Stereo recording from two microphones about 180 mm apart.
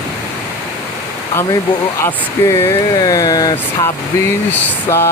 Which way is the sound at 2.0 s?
15° left (ahead or behind).